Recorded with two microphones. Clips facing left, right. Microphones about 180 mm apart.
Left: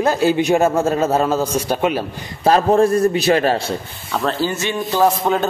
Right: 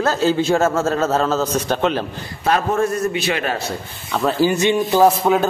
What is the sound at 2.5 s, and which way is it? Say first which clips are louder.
A man's voice: left 5 dB; 30° left (ahead or behind).